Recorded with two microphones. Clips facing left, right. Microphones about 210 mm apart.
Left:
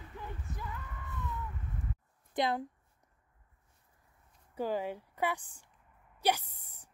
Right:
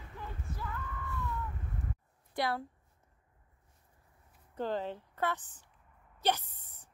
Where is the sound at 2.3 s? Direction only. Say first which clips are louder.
Left 2 dB; 20° left (ahead or behind).